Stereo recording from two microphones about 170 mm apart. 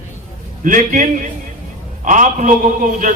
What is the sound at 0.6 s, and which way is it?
A man's voice, 50° right (ahead or behind).